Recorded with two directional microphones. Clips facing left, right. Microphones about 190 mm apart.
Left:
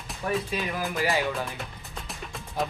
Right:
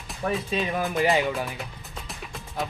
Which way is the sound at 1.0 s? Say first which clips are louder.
Right 4 dB; 20° right (ahead or behind).